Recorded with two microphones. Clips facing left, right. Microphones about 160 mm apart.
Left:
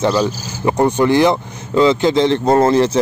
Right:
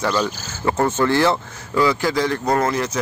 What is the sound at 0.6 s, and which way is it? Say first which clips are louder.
Speech: left 5 dB; 15° left (ahead or behind).